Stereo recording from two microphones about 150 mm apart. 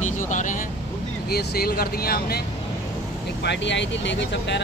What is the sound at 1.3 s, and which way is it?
Speech, 90° left.